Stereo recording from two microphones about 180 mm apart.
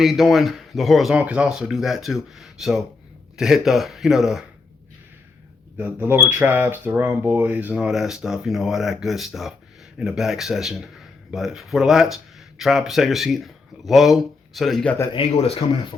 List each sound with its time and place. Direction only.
0.0 s speech: centre (ahead or behind)
5.7 s speech: 10° right (ahead or behind)
15.1 s speech: 35° left (ahead or behind)